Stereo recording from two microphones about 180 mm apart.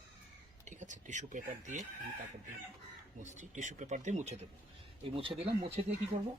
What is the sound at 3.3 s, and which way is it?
Speech, 40° right (ahead or behind).